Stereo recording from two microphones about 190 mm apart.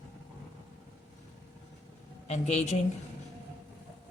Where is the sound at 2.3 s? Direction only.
35° left (ahead or behind).